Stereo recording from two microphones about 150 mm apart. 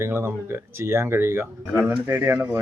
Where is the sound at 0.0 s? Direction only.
15° right (ahead or behind).